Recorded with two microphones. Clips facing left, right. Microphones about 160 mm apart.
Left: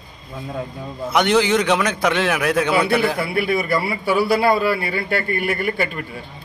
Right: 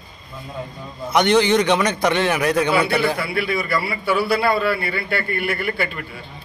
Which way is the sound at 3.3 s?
50° left (ahead or behind).